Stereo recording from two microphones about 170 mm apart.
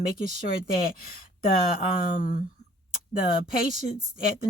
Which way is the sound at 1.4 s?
60° left (ahead or behind).